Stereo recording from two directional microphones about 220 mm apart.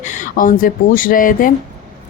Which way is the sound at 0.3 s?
40° left (ahead or behind).